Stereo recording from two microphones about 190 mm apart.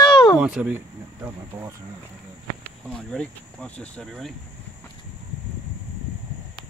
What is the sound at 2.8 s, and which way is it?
Speech, 5° left (ahead or behind).